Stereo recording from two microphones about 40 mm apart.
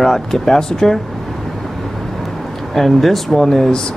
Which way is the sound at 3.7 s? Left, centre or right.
Centre.